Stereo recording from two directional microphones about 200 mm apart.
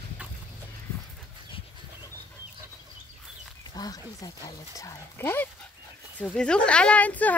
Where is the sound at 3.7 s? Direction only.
20° left (ahead or behind).